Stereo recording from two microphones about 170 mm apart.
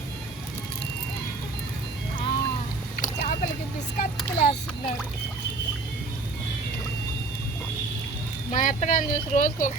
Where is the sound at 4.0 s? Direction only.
50° left (ahead or behind).